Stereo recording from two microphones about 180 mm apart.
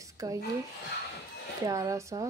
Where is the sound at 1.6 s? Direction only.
20° right (ahead or behind).